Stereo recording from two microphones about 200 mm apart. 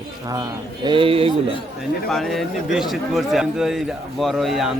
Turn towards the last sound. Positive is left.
turn(degrees=0)  # may be behind; listen again after turning